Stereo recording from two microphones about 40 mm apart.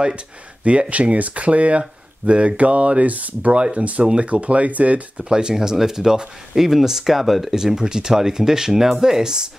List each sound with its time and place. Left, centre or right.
0.7 s speech: right
3.5 s speech: right
5.2 s speech: centre
7.5 s speech: centre